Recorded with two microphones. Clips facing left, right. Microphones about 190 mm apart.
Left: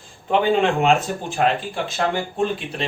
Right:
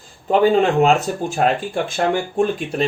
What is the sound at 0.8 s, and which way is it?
Speech, 40° right (ahead or behind).